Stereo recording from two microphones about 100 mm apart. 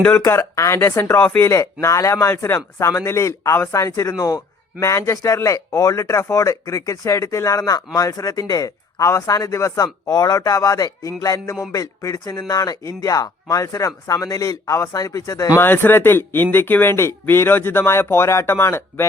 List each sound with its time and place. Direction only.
0.3 s speech: 30° left (ahead or behind)
15.6 s speech: 20° left (ahead or behind)